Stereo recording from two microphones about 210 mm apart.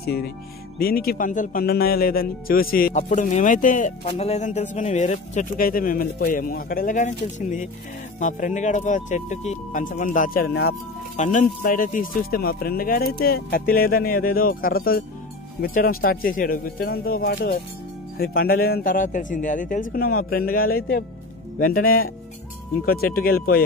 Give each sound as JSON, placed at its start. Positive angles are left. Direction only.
{"t": 0.0, "sound": "speech", "side_deg": 50}
{"t": 11.1, "sound": "speech", "side_deg": 35}